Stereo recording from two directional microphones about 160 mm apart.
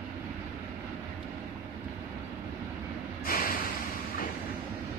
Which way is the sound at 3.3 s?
65° left (ahead or behind).